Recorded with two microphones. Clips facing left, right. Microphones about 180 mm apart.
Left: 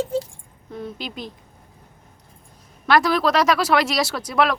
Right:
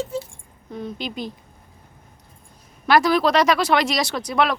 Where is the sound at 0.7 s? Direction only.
5° left (ahead or behind).